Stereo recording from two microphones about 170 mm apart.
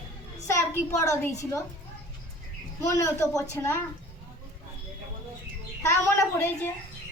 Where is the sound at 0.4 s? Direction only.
20° left (ahead or behind).